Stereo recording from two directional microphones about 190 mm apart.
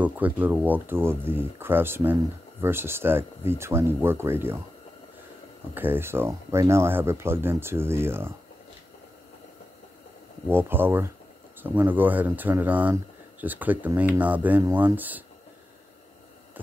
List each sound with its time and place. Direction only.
0.0 s speech: 10° right (ahead or behind)
5.8 s speech: 10° right (ahead or behind)
10.5 s speech: 10° right (ahead or behind)